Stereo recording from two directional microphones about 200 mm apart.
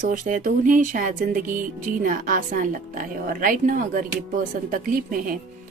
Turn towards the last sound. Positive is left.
turn(degrees=-45)  # may be behind; listen again after turning